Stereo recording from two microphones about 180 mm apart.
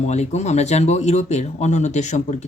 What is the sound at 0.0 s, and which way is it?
Speech, 40° left (ahead or behind).